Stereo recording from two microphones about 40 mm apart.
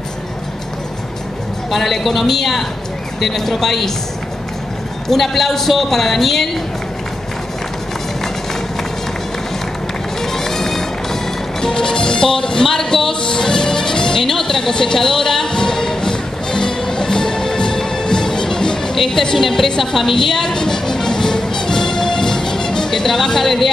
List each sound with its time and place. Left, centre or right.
1.7 s a man's voice: centre
5.0 s a man's voice: centre
10.2 s bagpipes: centre
11.6 s speech: centre
13.2 s music: centre
19.3 s a man's voice: centre
19.8 s music: centre